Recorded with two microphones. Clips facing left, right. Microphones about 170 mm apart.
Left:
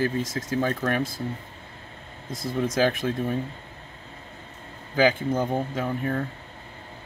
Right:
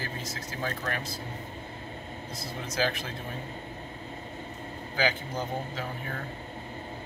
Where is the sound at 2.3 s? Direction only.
50° left (ahead or behind).